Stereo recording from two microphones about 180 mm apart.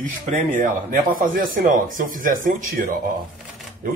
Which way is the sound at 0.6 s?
45° right (ahead or behind).